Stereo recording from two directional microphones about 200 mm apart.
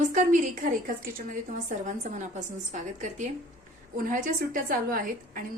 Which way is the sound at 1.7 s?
35° right (ahead or behind).